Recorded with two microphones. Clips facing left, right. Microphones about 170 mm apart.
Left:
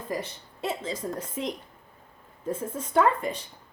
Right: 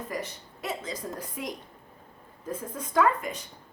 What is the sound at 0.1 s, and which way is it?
Speech, 30° left (ahead or behind).